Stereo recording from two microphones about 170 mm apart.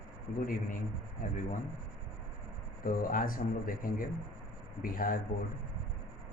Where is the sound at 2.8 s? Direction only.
55° left (ahead or behind).